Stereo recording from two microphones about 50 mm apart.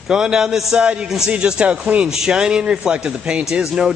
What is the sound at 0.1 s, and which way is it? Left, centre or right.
A man's voice, centre.